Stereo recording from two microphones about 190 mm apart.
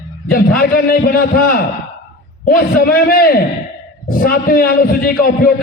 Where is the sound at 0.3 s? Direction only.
50° left (ahead or behind).